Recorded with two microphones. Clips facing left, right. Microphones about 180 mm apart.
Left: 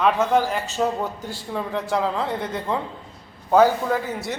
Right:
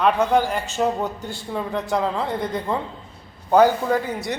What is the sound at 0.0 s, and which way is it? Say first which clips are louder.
A woman's voice: right 1 dB; centre (ahead or behind).